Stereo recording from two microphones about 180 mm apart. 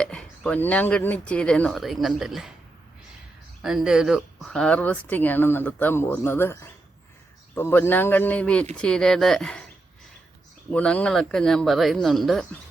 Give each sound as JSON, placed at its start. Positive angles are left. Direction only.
{"t": 0.0, "sound": "speech", "side_deg": 5}
{"t": 3.6, "sound": "speech", "side_deg": 0}
{"t": 10.7, "sound": "speech", "side_deg": 5}